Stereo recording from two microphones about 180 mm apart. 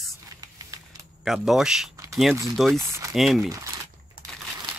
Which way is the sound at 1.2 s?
Centre (ahead or behind).